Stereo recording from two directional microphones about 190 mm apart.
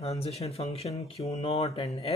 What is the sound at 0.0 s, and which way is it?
Speech, 35° left (ahead or behind).